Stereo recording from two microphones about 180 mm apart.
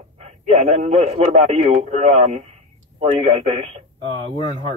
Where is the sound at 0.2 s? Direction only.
35° right (ahead or behind).